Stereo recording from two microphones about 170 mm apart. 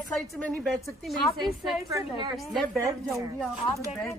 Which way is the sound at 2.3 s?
Centre (ahead or behind).